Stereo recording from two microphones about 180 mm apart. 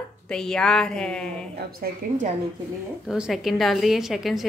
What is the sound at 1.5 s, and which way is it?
Speech, 55° right (ahead or behind).